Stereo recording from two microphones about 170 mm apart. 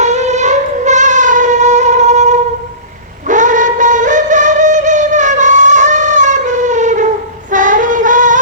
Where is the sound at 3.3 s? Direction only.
50° right (ahead or behind).